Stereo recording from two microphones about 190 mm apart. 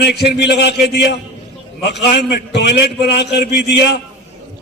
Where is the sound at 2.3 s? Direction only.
65° left (ahead or behind).